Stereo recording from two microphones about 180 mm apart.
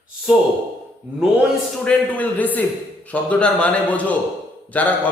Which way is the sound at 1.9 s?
10° left (ahead or behind).